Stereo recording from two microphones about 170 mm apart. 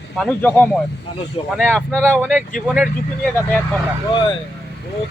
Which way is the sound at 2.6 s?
5° right (ahead or behind).